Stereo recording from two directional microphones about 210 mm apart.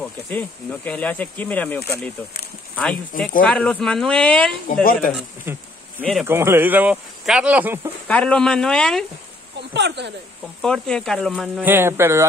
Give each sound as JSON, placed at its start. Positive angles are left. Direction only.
{"t": 0.0, "sound": "speech", "side_deg": 5}
{"t": 4.8, "sound": "speech", "side_deg": 40}
{"t": 5.1, "sound": "a sound", "side_deg": -10}
{"t": 6.2, "sound": "speech", "side_deg": -10}
{"t": 8.1, "sound": "speech", "side_deg": 5}
{"t": 9.8, "sound": "speech", "side_deg": -55}
{"t": 10.6, "sound": "speech", "side_deg": 5}
{"t": 11.7, "sound": "speech", "side_deg": -10}